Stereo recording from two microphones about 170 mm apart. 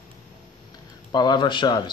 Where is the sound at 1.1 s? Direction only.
25° left (ahead or behind).